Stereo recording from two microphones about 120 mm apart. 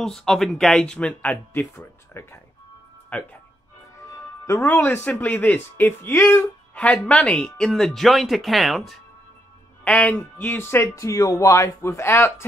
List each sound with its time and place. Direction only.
0.0 s speech: 5° left (ahead or behind)
4.5 s speech: 20° left (ahead or behind)